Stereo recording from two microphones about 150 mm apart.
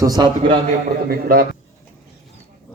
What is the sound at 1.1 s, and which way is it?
Speech, 75° right (ahead or behind).